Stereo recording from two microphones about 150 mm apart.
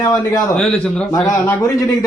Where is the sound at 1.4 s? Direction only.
15° left (ahead or behind).